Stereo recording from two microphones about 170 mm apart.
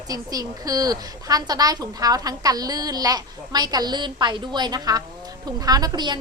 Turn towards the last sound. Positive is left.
turn(degrees=-25)  # may be behind; listen again after turning